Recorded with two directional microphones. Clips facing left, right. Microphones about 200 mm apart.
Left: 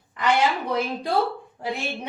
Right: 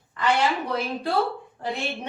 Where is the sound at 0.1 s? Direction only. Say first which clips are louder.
Left 1 dB; 15° left (ahead or behind).